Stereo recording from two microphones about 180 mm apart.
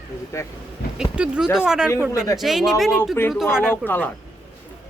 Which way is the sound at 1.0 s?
5° right (ahead or behind).